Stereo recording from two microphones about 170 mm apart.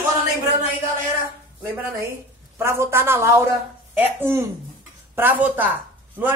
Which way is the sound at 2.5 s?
15° right (ahead or behind).